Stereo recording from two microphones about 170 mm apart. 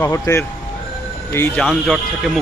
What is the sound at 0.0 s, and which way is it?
Speech, 15° left (ahead or behind).